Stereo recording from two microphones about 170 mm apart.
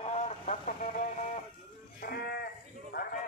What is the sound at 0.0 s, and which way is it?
Vehicle, 40° left (ahead or behind).